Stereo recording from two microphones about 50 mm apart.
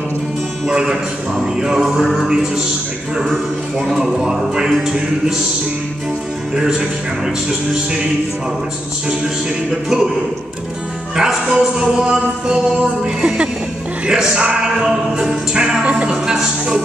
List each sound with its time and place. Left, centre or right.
0.7 s music: centre
6.5 s music: centre
9.7 s music: centre
11.1 s music: centre
16.1 s music: centre